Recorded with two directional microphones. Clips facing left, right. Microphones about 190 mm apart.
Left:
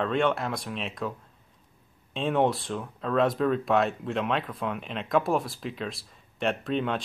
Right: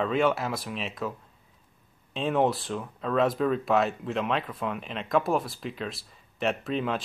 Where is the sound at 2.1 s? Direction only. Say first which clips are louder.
Even; centre (ahead or behind).